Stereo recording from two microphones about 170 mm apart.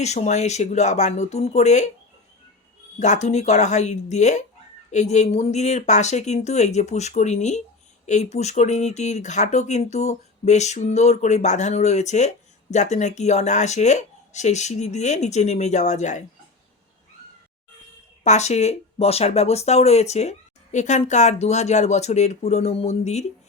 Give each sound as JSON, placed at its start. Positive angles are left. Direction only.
{"t": 0.0, "sound": "speech", "side_deg": 40}
{"t": 3.0, "sound": "speech", "side_deg": 45}
{"t": 18.2, "sound": "speech", "side_deg": 40}